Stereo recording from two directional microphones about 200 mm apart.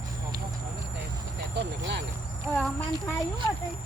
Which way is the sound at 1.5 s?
55° right (ahead or behind).